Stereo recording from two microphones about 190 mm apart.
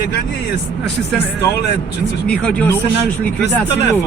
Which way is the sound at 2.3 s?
5° left (ahead or behind).